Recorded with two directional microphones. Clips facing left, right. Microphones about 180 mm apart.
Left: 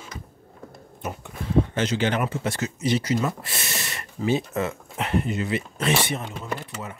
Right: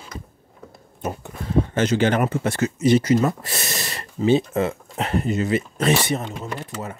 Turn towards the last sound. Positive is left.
turn(degrees=-40)  # may be behind; listen again after turning